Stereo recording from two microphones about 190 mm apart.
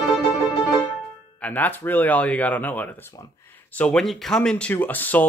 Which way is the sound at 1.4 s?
10° left (ahead or behind).